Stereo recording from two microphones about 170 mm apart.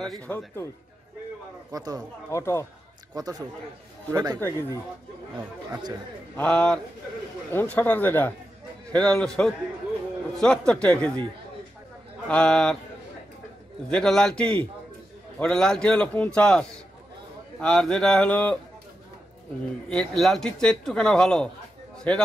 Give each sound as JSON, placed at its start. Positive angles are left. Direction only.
{"t": 0.0, "sound": "speech", "side_deg": 5}
{"t": 1.7, "sound": "speech", "side_deg": -20}
{"t": 2.3, "sound": "speech", "side_deg": 15}
{"t": 3.2, "sound": "speech", "side_deg": -20}
{"t": 4.4, "sound": "speech", "side_deg": 15}
{"t": 6.3, "sound": "speech", "side_deg": 5}
{"t": 12.3, "sound": "speech", "side_deg": 5}
{"t": 13.8, "sound": "speech", "side_deg": 5}
{"t": 19.9, "sound": "speech", "side_deg": 5}
{"t": 21.9, "sound": "a sound", "side_deg": 5}